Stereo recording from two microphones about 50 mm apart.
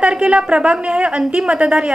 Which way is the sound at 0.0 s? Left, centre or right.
Right.